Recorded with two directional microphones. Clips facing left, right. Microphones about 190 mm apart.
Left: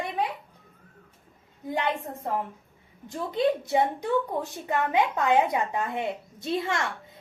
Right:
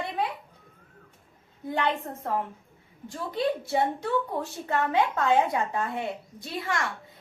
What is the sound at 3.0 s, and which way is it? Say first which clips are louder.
A woman's voice: left 3 dB; 20° left (ahead or behind).